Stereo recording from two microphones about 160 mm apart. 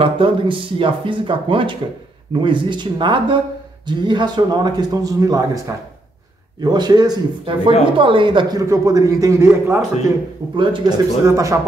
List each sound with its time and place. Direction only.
0.0 s a man's voice: 30° right (ahead or behind); by 9.8 s 15° right (ahead or behind)
10.5 s speech: 30° right (ahead or behind)
11.2 s a man's voice: 20° right (ahead or behind)